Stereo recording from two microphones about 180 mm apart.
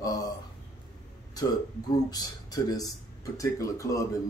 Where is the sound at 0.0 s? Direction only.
20° left (ahead or behind).